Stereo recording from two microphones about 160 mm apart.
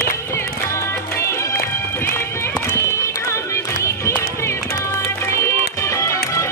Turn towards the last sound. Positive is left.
turn(degrees=20)  # may be behind; listen again after turning